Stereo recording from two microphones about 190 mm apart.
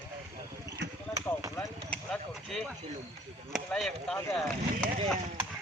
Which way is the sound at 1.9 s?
5° left (ahead or behind).